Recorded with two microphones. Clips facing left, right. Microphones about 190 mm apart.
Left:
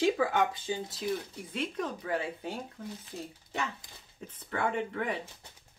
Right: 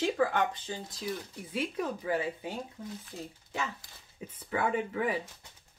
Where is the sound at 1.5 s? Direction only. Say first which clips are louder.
Right 1 dB; 5° right (ahead or behind).